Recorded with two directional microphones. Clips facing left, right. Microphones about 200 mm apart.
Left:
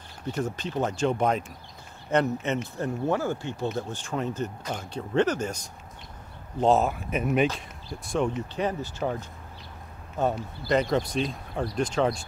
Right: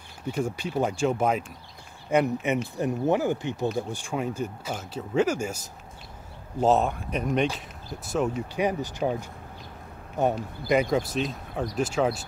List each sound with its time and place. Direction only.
0.3 s speech: 10° right (ahead or behind)
6.6 s speech: centre (ahead or behind)
8.1 s speech: 10° right (ahead or behind)